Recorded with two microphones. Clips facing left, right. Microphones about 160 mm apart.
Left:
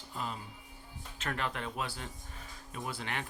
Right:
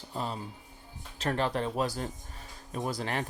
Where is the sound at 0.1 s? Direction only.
35° right (ahead or behind).